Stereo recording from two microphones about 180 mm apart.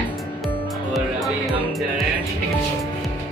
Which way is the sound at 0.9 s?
Centre (ahead or behind).